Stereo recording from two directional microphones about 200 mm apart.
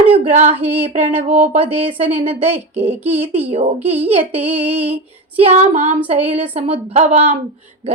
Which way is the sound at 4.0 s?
10° right (ahead or behind).